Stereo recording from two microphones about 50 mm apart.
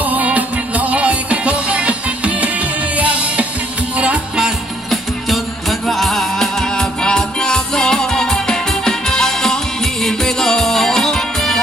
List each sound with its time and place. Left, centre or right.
0.0 s music: right
5.3 s music: centre